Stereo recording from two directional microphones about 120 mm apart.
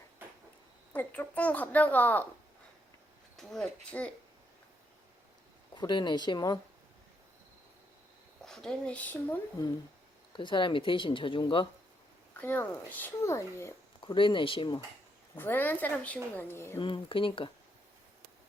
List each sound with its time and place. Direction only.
0.9 s a woman's voice: 15° left (ahead or behind)
3.3 s speech: centre (ahead or behind)
5.7 s speech: 40° left (ahead or behind)
8.4 s speech: 5° left (ahead or behind)
10.3 s speech: 40° left (ahead or behind)
12.4 s speech: 15° left (ahead or behind)
14.0 s speech: 45° left (ahead or behind)
15.4 s a woman's voice: 15° left (ahead or behind)
16.8 s speech: 45° left (ahead or behind)